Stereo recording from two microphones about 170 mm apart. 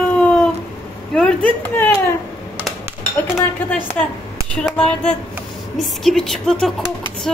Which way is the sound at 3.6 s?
10° left (ahead or behind).